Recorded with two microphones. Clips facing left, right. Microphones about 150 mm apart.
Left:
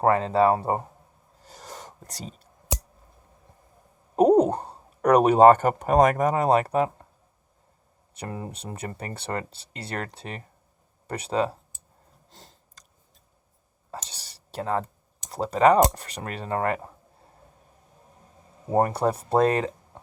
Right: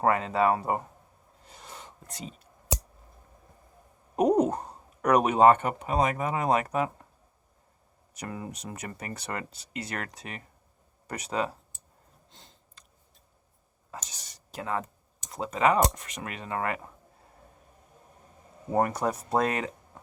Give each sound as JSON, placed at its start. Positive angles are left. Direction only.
{"t": 0.0, "sound": "speech", "side_deg": 35}
{"t": 1.4, "sound": "a sound", "side_deg": 40}
{"t": 4.1, "sound": "speech", "side_deg": 30}
{"t": 8.1, "sound": "speech", "side_deg": 35}
{"t": 12.3, "sound": "sniff", "side_deg": 40}
{"t": 13.9, "sound": "a sound", "side_deg": 30}
{"t": 15.3, "sound": "speech", "side_deg": 35}
{"t": 18.7, "sound": "speech", "side_deg": 30}